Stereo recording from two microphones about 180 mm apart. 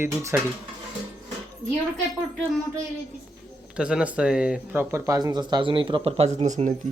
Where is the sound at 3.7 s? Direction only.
5° right (ahead or behind); by 6.7 s 40° right (ahead or behind).